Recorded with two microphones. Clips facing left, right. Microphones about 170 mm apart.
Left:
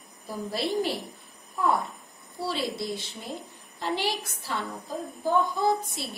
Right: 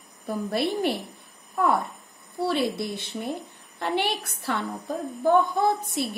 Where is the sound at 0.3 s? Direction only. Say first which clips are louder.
Right 3 dB; 60° right (ahead or behind).